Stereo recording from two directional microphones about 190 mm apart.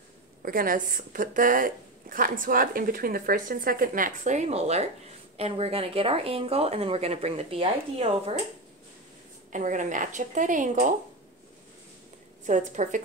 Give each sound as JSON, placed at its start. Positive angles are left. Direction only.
{"t": 0.4, "sound": "a woman's voice", "side_deg": -50}
{"t": 9.5, "sound": "speech", "side_deg": -40}
{"t": 12.4, "sound": "speech", "side_deg": -40}